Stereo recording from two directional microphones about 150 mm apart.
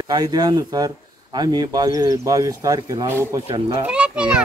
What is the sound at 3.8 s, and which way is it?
Speech, 5° right (ahead or behind).